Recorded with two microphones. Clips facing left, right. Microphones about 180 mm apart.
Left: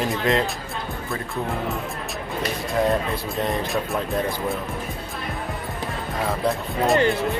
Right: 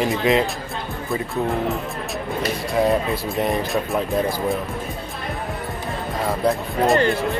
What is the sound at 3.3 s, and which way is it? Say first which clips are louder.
Speech: right 3 dB; centre (ahead or behind).